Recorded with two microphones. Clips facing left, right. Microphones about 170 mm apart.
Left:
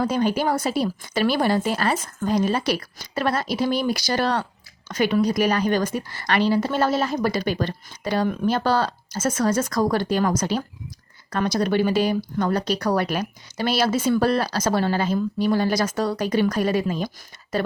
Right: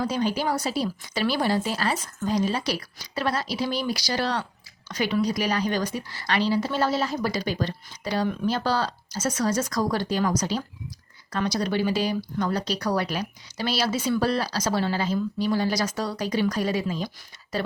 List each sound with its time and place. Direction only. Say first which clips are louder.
0.0 s speech: left 4 dB; 55° left (ahead or behind)